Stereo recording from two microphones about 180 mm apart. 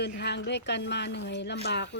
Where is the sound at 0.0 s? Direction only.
70° left (ahead or behind).